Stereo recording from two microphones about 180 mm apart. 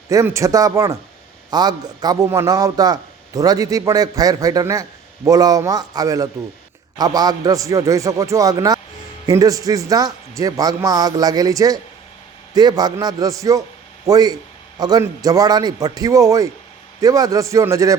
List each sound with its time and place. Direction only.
0.1 s a man's voice: 15° right (ahead or behind)